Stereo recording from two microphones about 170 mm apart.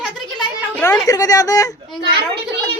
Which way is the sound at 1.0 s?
20° left (ahead or behind).